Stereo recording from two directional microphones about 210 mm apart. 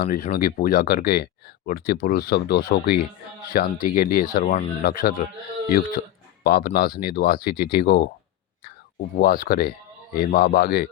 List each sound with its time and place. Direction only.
0.0 s speech: 45° left (ahead or behind)
6.4 s speech: 45° left (ahead or behind)
9.1 s speech: 45° left (ahead or behind)